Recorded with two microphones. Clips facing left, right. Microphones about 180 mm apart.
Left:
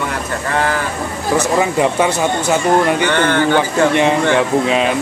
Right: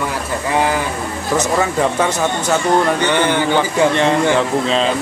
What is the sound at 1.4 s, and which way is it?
Speech, 10° left (ahead or behind).